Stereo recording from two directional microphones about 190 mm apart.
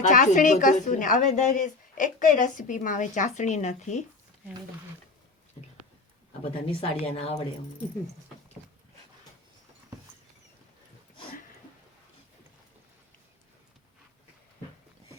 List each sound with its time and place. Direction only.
0.0 s a woman's voice: 40° left (ahead or behind)
6.4 s speech: 30° left (ahead or behind)